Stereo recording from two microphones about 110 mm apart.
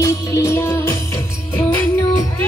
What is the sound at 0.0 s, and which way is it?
Music, 25° left (ahead or behind).